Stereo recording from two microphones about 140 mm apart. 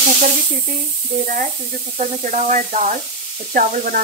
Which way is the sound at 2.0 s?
60° right (ahead or behind).